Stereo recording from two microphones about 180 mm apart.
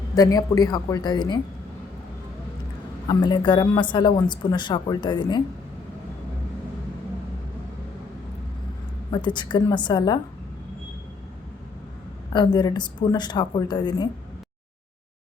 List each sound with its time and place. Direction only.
0.2 s speech: 20° left (ahead or behind)
3.1 s speech: 25° left (ahead or behind)
9.1 s speech: 25° left (ahead or behind)
12.3 s speech: 25° left (ahead or behind)